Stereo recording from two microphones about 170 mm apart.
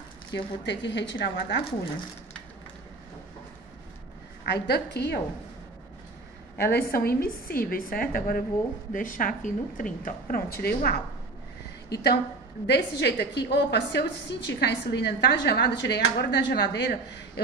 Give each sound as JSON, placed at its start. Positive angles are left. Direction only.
{"t": 0.3, "sound": "speech", "side_deg": 90}
{"t": 4.5, "sound": "a woman's voice", "side_deg": 75}
{"t": 6.6, "sound": "a woman's voice", "side_deg": 65}
{"t": 12.6, "sound": "a woman's voice", "side_deg": 80}